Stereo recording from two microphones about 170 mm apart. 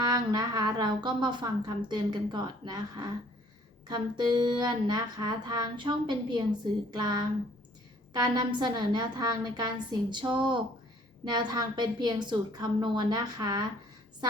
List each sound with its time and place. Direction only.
0.0 s speech: 25° right (ahead or behind)
4.2 s speech: 25° right (ahead or behind)